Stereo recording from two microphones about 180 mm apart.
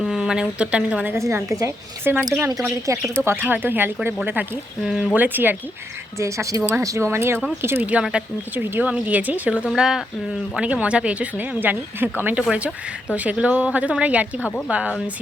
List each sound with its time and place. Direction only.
0.0 s a woman's voice: 5° right (ahead or behind)